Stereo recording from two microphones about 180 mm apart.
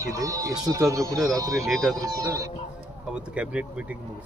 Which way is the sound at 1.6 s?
Centre (ahead or behind).